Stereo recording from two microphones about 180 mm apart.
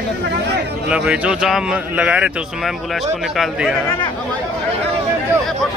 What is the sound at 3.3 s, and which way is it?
Speech, centre (ahead or behind).